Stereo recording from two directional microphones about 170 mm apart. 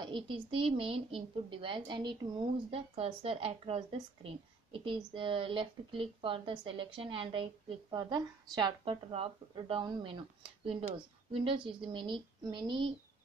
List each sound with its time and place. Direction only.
0.0 s speech: 30° right (ahead or behind)